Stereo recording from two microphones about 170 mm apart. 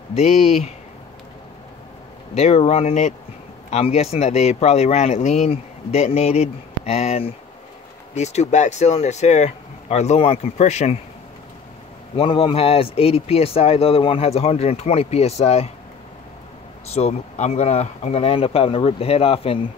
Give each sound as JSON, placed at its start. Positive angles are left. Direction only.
{"t": 0.1, "sound": "speech", "side_deg": 40}
{"t": 2.3, "sound": "speech", "side_deg": 40}
{"t": 12.2, "sound": "speech", "side_deg": 30}
{"t": 16.9, "sound": "speech", "side_deg": 40}